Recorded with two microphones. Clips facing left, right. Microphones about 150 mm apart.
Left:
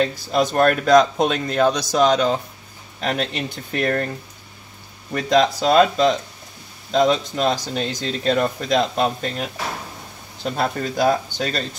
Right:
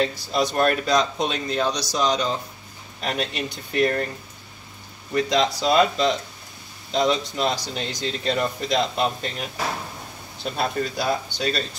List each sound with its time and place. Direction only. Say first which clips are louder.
0.1 s speech: left 4 dB; 45° left (ahead or behind)
5.1 s speech: left 4 dB; 50° left (ahead or behind)